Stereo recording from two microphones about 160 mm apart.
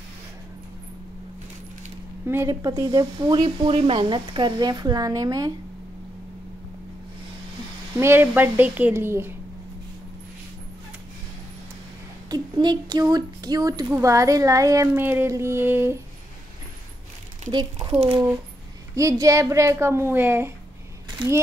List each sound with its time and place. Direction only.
2.2 s a woman's voice: 15° right (ahead or behind)
8.0 s a woman's voice: 15° right (ahead or behind)
12.3 s a woman's voice: 25° right (ahead or behind)
17.5 s speech: 30° right (ahead or behind)
18.9 s a woman's voice: 20° right (ahead or behind)